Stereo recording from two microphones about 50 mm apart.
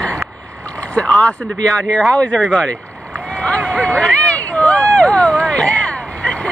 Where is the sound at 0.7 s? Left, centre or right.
Left.